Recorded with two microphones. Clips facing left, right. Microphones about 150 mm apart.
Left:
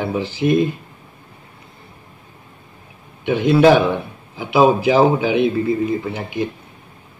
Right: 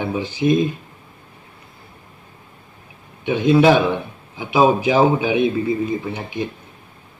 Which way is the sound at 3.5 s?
15° right (ahead or behind).